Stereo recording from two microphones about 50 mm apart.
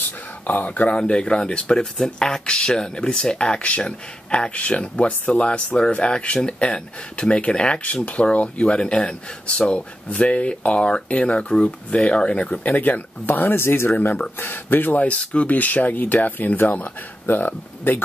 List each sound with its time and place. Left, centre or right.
0.5 s speech: left
12.6 s speech: left
14.4 s speech: left